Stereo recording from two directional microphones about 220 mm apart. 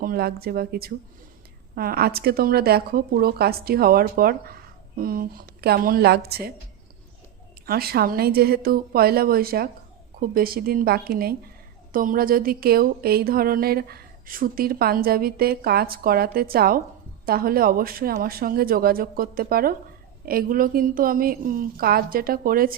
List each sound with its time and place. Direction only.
0.0 s speech: 45° right (ahead or behind)
7.7 s speech: 45° right (ahead or behind)